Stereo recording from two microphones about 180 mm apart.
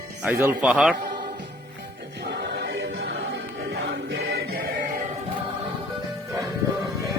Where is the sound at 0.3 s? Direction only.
10° right (ahead or behind).